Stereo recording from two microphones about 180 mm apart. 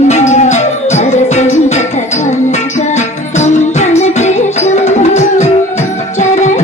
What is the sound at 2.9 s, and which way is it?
Music, 40° left (ahead or behind).